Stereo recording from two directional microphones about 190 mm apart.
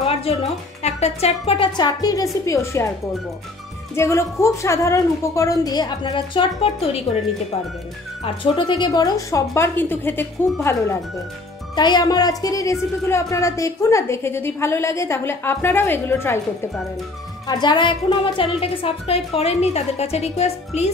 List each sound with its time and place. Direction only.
0.0 s music: 30° left (ahead or behind)
0.8 s speech: 35° left (ahead or behind); by 2.9 s 15° left (ahead or behind)
3.9 s a woman's voice: 15° left (ahead or behind)
8.2 s a woman's voice: 25° left (ahead or behind)
17.5 s a woman's voice: 25° left (ahead or behind)